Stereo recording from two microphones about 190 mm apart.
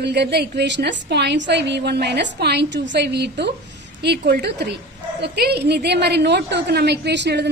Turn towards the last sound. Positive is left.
turn(degrees=-65)  # may be behind; listen again after turning